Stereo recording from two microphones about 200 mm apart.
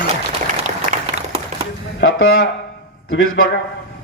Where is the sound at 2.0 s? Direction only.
80° left.